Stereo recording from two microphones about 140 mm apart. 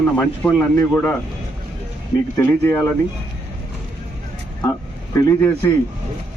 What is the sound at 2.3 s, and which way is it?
Speech, 15° left (ahead or behind).